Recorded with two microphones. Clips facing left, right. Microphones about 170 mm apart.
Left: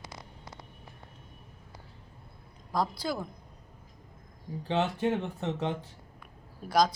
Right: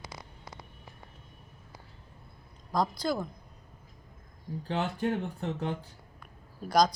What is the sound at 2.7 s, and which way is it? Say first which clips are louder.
Speech: right 2 dB; 5° left (ahead or behind).